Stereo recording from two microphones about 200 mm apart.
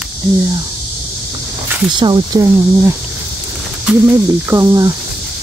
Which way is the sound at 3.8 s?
10° right (ahead or behind).